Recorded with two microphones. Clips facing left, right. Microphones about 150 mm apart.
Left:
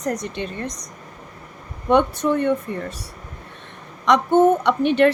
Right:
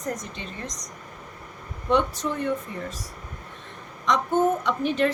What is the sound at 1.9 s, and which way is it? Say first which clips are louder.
Speech: left 6 dB; 60° left (ahead or behind).